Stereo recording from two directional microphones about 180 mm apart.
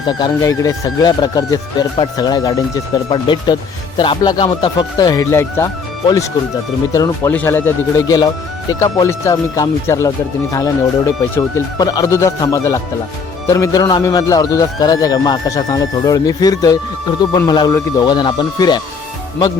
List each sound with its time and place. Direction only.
0.1 s speech: 20° left (ahead or behind)
6.9 s speech: 20° left (ahead or behind)